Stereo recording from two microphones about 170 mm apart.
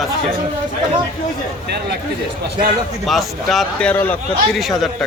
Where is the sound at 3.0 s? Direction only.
Centre (ahead or behind).